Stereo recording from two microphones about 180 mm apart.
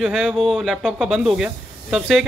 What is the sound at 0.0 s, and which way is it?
Speech, centre (ahead or behind).